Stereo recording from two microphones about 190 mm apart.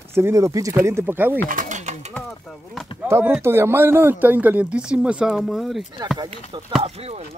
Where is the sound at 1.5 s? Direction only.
40° right (ahead or behind).